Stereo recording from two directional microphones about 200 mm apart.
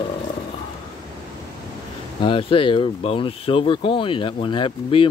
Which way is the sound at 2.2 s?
25° left (ahead or behind).